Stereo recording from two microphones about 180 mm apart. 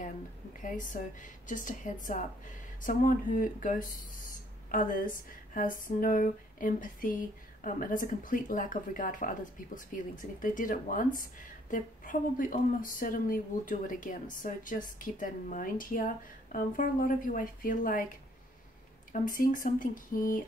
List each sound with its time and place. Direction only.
1.5 s a woman's voice: 45° left (ahead or behind)
19.1 s a woman's voice: 50° left (ahead or behind)